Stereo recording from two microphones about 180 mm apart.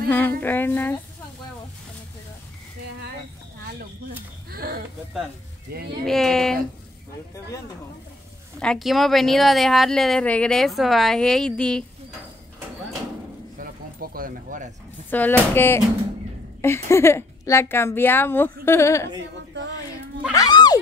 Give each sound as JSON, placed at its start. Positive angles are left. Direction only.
{"t": 0.1, "sound": "a woman's voice", "side_deg": 10}
{"t": 4.5, "sound": "speech", "side_deg": -55}
{"t": 6.0, "sound": "a woman's voice", "side_deg": 0}
{"t": 8.5, "sound": "a woman's voice", "side_deg": 0}
{"t": 13.6, "sound": "a sound", "side_deg": -55}
{"t": 15.0, "sound": "a woman's voice", "side_deg": 10}
{"t": 20.3, "sound": "a sound", "side_deg": 25}